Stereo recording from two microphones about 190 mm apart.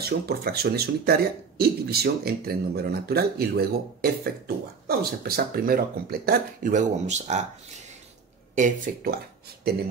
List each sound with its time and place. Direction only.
0.0 s speech: 55° right (ahead or behind); by 7.4 s 35° right (ahead or behind)
8.5 s speech: 45° right (ahead or behind)